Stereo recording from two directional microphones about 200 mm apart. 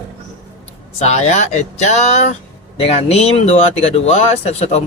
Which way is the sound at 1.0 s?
35° left (ahead or behind).